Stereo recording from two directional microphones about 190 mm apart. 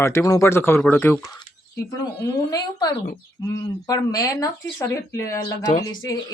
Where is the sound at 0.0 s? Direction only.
15° left (ahead or behind).